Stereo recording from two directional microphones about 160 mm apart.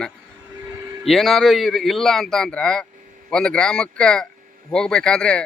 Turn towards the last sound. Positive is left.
turn(degrees=5)  # may be behind; listen again after turning